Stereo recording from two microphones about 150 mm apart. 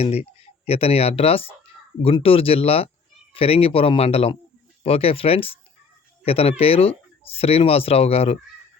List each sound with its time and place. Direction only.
0.0 s speech: 45° left (ahead or behind)